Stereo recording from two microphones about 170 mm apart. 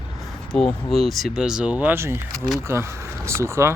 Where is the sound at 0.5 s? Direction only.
Centre (ahead or behind).